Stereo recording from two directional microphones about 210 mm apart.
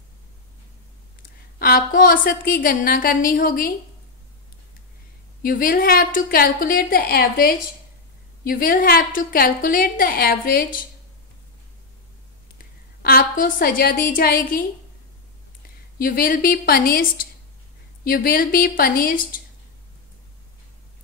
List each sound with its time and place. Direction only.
1.6 s a woman's voice: 45° left (ahead or behind)
5.4 s a woman's voice: 40° left (ahead or behind)
12.5 s a woman's voice: 45° left (ahead or behind)
16.0 s a woman's voice: 40° left (ahead or behind)